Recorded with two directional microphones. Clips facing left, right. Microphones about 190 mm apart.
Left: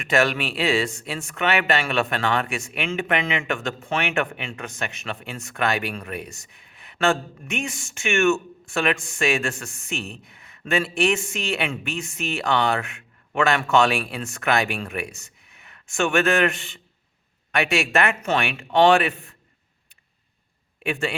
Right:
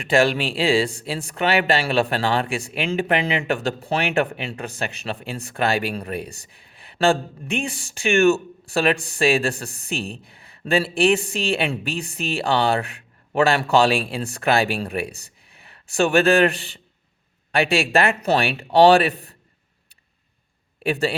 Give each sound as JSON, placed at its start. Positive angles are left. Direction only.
{"t": 0.0, "sound": "speech", "side_deg": -30}
{"t": 20.8, "sound": "a man's voice", "side_deg": -35}